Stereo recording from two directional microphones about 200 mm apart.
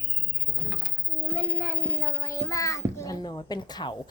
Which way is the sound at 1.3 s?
10° left (ahead or behind).